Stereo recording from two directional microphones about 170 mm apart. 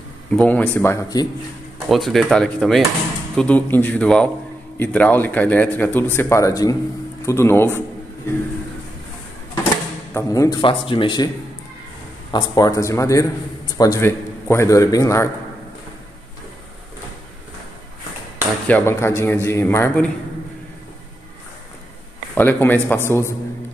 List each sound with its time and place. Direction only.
0.3 s speech: 10° left (ahead or behind)
1.9 s dishes: centre (ahead or behind)
3.3 s speech: 10° left (ahead or behind)
10.1 s a man's voice: 20° left (ahead or behind)
10.6 s a man's voice: 30° left (ahead or behind)
12.3 s a man's voice: 25° left (ahead or behind)
18.7 s speech: 10° left (ahead or behind)
22.3 s speech: 10° left (ahead or behind)